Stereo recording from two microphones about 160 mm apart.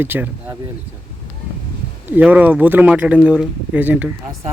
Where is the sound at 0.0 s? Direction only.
10° right (ahead or behind).